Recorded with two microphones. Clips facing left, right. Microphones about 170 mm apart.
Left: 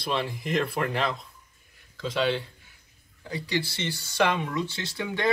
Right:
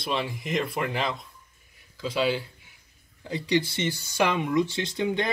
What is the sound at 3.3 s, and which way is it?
Speech, 20° right (ahead or behind).